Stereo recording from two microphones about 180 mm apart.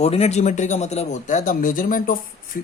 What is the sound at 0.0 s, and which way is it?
Speech, 35° left (ahead or behind).